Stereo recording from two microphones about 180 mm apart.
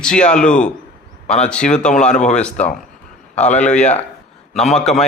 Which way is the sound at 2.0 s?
40° left (ahead or behind).